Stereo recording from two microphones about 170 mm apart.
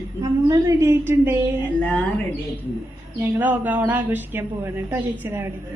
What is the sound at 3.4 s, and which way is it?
A woman's voice, 10° right (ahead or behind).